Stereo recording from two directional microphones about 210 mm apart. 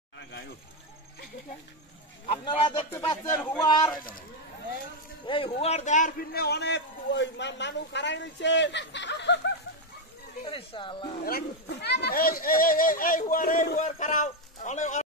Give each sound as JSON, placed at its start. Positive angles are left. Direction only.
{"t": 2.2, "sound": "speech", "side_deg": 25}
{"t": 5.2, "sound": "a man's voice", "side_deg": 25}
{"t": 10.4, "sound": "speech", "side_deg": 25}
{"t": 11.2, "sound": "speech", "side_deg": 50}